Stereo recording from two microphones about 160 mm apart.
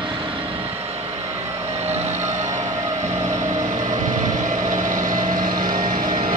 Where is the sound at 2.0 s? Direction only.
45° right (ahead or behind).